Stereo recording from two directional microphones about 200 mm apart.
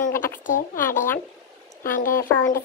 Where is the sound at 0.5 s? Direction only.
40° left (ahead or behind).